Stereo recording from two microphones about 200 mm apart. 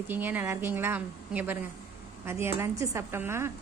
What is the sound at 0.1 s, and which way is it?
A woman's voice, 10° right (ahead or behind).